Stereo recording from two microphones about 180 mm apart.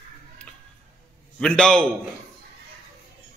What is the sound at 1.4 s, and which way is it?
Speech, 5° left (ahead or behind).